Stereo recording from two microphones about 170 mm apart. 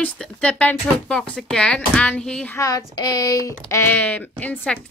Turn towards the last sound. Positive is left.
turn(degrees=10)  # may be behind; listen again after turning